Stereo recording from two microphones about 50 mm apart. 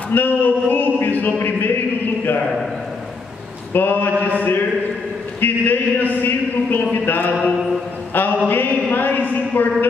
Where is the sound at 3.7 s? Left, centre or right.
Left.